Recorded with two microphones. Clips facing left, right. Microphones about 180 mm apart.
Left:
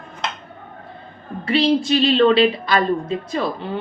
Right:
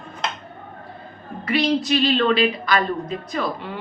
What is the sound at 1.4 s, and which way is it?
A woman's voice, 30° left (ahead or behind).